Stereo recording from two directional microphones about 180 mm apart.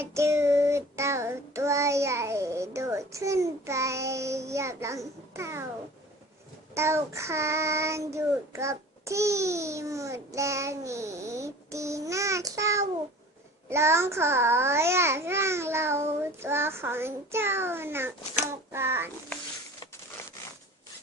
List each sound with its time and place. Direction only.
0.0 s child singing: 15° right (ahead or behind)
6.7 s child singing: 15° right (ahead or behind)